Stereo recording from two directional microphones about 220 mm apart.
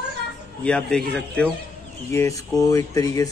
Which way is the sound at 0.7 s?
5° left (ahead or behind).